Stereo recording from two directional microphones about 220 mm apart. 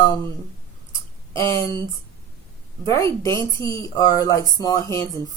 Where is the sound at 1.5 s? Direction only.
15° left (ahead or behind).